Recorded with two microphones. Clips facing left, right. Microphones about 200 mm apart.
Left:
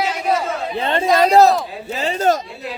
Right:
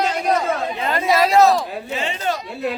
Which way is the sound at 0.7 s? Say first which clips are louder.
Left 6 dB; 30° left (ahead or behind).